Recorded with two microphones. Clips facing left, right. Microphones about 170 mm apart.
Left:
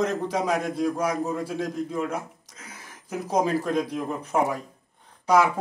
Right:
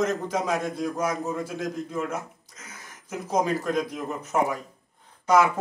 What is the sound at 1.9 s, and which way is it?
Speech, 5° right (ahead or behind).